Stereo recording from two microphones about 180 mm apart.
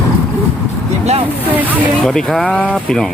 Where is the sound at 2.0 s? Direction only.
5° left (ahead or behind).